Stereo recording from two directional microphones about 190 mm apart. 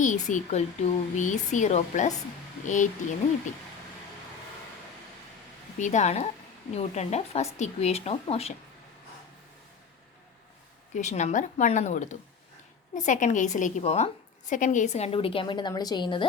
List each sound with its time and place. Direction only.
0.0 s speech: 40° left (ahead or behind)
5.8 s speech: 40° left (ahead or behind)
10.9 s a woman's voice: 40° left (ahead or behind)